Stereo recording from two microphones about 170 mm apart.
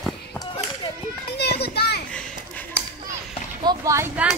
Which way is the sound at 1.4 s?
75° left (ahead or behind).